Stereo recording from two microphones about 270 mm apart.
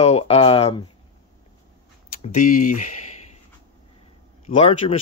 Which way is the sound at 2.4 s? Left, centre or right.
Left.